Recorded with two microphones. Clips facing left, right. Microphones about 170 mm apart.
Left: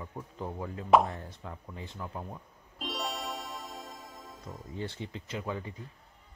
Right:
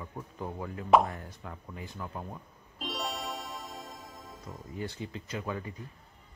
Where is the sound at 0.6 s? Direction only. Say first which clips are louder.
Even; 25° left (ahead or behind).